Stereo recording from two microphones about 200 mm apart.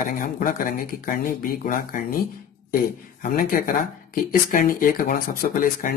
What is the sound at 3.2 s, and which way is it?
Speech, 45° left (ahead or behind).